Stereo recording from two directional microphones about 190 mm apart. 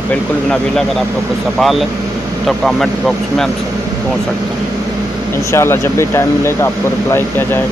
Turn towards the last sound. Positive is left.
turn(degrees=10)  # may be behind; listen again after turning